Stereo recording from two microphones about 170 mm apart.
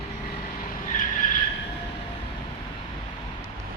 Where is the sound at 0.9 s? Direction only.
50° left (ahead or behind).